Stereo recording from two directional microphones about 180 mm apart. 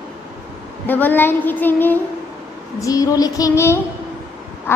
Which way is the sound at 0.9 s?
10° left (ahead or behind).